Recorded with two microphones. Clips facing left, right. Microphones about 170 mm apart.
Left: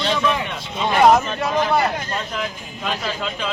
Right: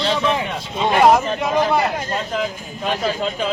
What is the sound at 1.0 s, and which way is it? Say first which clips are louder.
Speech: even; 10° right (ahead or behind).